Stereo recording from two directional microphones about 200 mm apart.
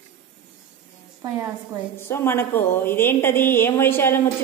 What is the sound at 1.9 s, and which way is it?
A woman's voice, 10° left (ahead or behind).